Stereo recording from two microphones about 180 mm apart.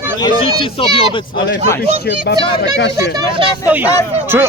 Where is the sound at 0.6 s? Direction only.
30° left (ahead or behind).